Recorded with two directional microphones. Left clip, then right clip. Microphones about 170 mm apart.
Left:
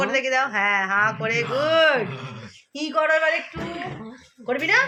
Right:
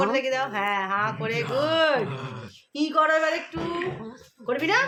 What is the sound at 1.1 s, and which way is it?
A woman's voice, 15° right (ahead or behind).